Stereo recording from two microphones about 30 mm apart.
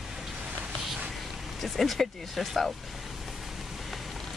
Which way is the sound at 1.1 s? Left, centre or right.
Centre.